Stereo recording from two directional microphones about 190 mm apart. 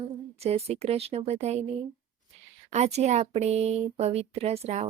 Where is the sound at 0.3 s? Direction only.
35° right (ahead or behind).